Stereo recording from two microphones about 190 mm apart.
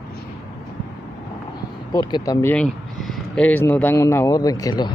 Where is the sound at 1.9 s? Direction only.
20° left (ahead or behind).